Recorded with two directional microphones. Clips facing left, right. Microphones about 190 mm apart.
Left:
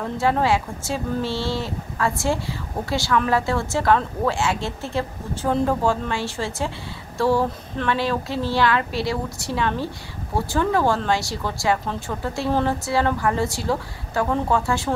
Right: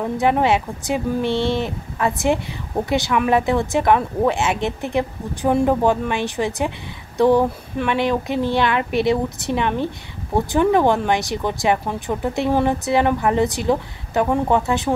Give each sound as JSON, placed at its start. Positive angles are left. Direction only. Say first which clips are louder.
{"t": 0.0, "sound": "speech", "louder": "right 3 dB", "side_deg": -20}